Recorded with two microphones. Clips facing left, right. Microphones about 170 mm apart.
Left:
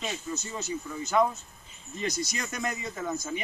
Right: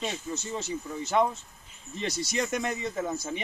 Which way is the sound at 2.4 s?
25° right (ahead or behind).